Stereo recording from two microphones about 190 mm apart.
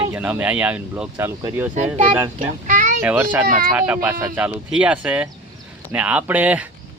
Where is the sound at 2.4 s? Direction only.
40° right (ahead or behind).